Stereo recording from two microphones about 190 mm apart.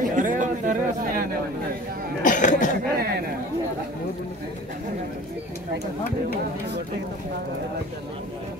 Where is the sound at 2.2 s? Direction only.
40° left (ahead or behind).